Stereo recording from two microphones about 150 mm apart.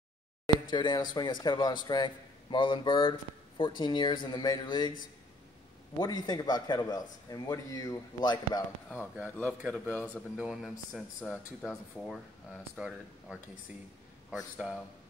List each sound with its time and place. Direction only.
0.7 s a man's voice: 30° left (ahead or behind)
5.9 s a man's voice: 25° left (ahead or behind)
8.9 s speech: 10° right (ahead or behind)
9.9 s speech: 10° left (ahead or behind)
10.3 s speech: 5° right (ahead or behind)